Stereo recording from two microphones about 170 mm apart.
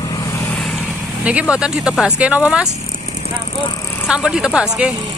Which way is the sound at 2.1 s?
10° right (ahead or behind).